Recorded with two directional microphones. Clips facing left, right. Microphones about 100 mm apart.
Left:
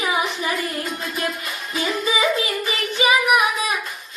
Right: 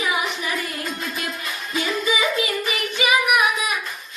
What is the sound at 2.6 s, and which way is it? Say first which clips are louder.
Child singing: left 2 dB; 30° left (ahead or behind).